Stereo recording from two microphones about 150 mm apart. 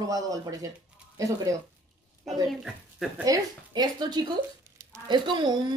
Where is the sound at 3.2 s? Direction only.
25° right (ahead or behind).